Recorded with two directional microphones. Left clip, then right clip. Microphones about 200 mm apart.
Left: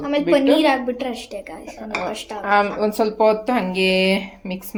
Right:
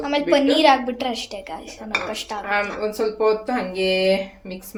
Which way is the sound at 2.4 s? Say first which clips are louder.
Left 6 dB; 40° left (ahead or behind).